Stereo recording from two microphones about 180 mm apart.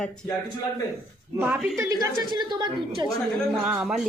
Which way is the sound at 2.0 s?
25° right (ahead or behind).